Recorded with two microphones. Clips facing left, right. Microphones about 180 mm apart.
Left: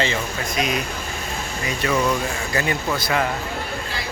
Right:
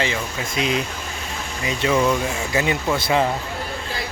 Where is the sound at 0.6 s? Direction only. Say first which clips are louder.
Right 2 dB; 30° right (ahead or behind).